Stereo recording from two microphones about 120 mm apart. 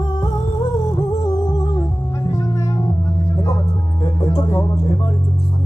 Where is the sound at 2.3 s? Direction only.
25° left (ahead or behind).